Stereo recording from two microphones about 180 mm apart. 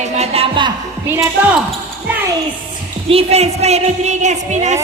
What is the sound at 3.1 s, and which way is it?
A woman's voice, 35° right (ahead or behind).